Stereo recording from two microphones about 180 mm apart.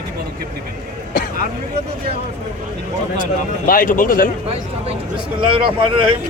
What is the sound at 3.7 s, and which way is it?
Speech, 50° left (ahead or behind).